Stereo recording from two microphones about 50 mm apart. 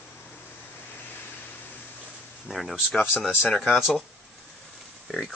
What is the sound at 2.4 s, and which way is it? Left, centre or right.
Speech, centre.